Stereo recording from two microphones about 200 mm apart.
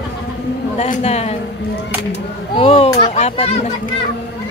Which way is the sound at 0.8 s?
35° left (ahead or behind).